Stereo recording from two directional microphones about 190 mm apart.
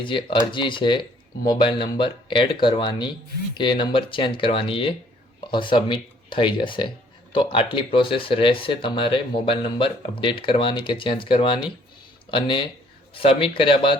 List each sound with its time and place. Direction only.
0.0 s speech: 25° left (ahead or behind)